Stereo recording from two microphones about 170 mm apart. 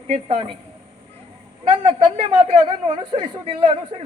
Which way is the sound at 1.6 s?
30° right (ahead or behind).